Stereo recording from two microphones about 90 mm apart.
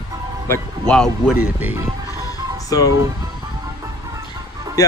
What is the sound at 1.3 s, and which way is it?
Speech, 20° right (ahead or behind).